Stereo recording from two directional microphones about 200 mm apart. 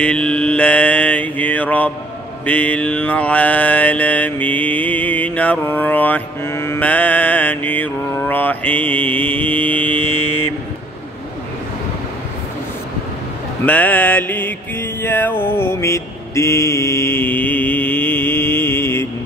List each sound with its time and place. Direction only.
0.0 s mantra: 5° left (ahead or behind)
13.7 s mantra: 10° left (ahead or behind)